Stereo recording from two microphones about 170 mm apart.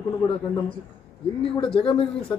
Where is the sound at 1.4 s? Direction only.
30° left (ahead or behind).